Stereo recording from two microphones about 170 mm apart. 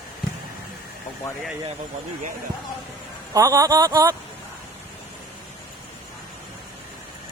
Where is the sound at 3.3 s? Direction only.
20° right (ahead or behind).